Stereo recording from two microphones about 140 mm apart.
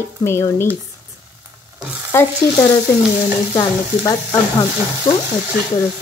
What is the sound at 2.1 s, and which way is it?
Speech, 20° left (ahead or behind).